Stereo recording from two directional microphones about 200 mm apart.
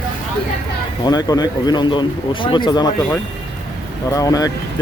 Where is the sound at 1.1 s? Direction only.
20° left (ahead or behind).